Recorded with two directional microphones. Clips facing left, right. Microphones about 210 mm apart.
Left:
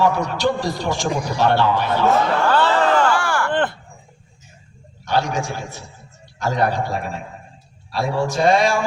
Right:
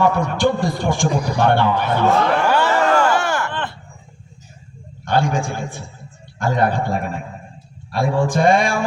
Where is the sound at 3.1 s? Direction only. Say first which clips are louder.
Right 1 dB; 20° right (ahead or behind).